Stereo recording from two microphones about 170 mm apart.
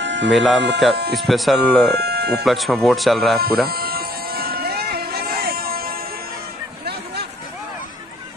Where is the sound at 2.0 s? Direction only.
70° right (ahead or behind).